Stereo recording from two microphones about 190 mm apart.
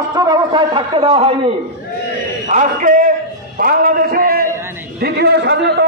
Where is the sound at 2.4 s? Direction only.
40° right (ahead or behind).